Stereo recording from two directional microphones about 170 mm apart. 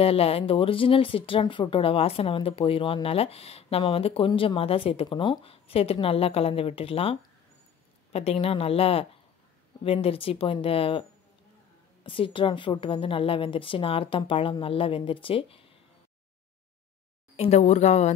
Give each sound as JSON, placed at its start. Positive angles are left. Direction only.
{"t": 0.0, "sound": "speech", "side_deg": 35}
{"t": 17.4, "sound": "speech", "side_deg": 40}